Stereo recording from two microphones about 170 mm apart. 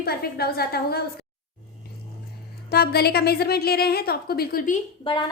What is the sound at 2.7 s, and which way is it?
A woman's voice, 65° left (ahead or behind).